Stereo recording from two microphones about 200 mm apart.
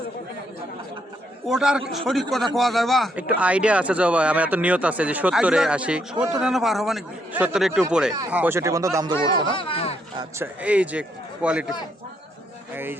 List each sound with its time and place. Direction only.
1.5 s speech: 5° right (ahead or behind)
9.5 s speech: 25° left (ahead or behind)
10.2 s speech: 10° right (ahead or behind)
12.7 s speech: 10° right (ahead or behind)